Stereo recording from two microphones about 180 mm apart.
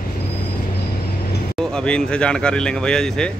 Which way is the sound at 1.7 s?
5° left (ahead or behind).